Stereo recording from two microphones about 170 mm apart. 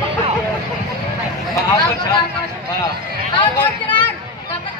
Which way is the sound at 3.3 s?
25° left (ahead or behind).